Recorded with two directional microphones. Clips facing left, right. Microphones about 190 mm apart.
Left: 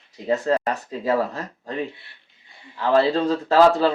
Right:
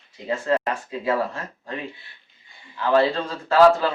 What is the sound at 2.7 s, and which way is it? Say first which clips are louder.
Speech: left 1 dB; 35° left (ahead or behind).